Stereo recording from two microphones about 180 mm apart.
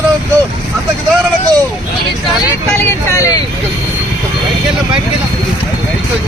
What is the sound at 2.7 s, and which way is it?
Speech, 15° left (ahead or behind).